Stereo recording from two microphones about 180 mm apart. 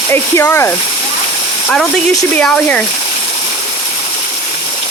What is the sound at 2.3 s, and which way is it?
Speech, 5° left (ahead or behind).